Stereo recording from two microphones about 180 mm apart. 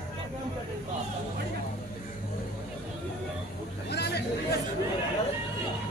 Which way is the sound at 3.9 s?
65° left (ahead or behind).